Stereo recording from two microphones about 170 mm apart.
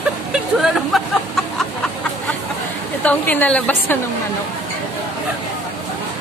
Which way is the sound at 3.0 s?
10° left (ahead or behind).